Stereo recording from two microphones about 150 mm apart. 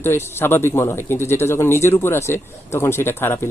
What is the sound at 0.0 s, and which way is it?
Speech, 15° left (ahead or behind).